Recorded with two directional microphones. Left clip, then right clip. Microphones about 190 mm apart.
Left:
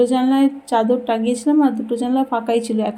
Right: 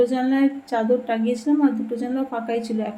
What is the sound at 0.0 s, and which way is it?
Speech, 35° left (ahead or behind).